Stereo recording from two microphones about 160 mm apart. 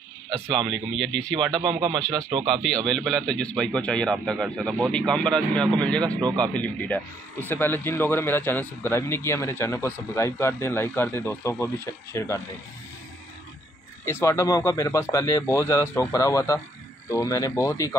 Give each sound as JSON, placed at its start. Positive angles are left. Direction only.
{"t": 0.6, "sound": "speech", "side_deg": 5}
{"t": 1.5, "sound": "speech", "side_deg": -30}
{"t": 2.0, "sound": "speech", "side_deg": 5}
{"t": 14.0, "sound": "speech", "side_deg": 20}